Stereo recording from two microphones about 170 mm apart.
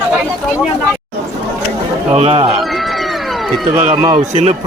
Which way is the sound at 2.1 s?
35° right (ahead or behind).